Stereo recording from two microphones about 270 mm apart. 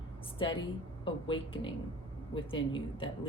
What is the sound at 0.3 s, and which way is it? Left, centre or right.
A woman's voice, centre.